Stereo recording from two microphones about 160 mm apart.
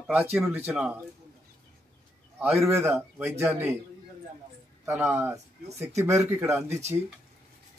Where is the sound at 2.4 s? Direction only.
Centre (ahead or behind).